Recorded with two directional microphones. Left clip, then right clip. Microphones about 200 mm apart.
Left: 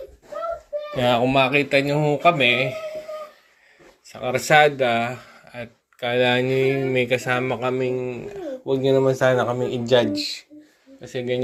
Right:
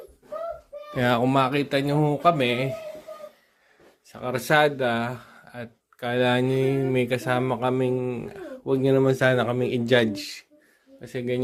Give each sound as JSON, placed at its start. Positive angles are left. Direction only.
{"t": 0.9, "sound": "speech", "side_deg": -30}
{"t": 4.1, "sound": "speech", "side_deg": -20}
{"t": 11.0, "sound": "speech", "side_deg": -20}